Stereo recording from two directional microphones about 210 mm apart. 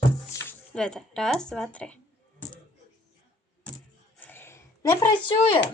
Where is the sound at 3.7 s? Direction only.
5° left (ahead or behind).